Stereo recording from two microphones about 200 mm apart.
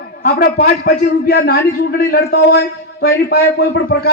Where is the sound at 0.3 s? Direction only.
45° left (ahead or behind).